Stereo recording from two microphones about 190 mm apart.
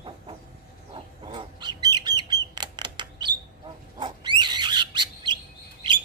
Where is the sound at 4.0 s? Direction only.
25° right (ahead or behind).